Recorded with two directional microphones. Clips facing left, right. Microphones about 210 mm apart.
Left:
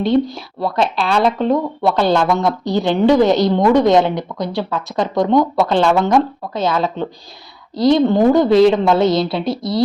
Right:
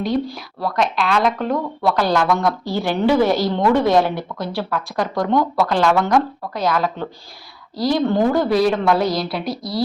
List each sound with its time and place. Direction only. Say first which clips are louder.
0.0 s a woman's voice: left 6 dB; 25° left (ahead or behind)